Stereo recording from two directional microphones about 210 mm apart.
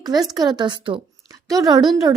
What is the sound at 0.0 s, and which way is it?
A woman's voice, 20° right (ahead or behind).